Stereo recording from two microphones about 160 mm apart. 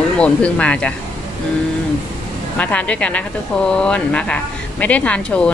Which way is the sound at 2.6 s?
10° left (ahead or behind).